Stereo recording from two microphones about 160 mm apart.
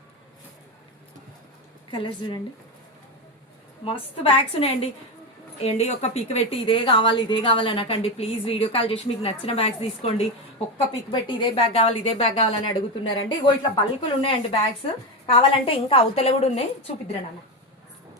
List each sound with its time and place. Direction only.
1.9 s a woman's voice: 30° left (ahead or behind)
3.8 s a woman's voice: 35° left (ahead or behind)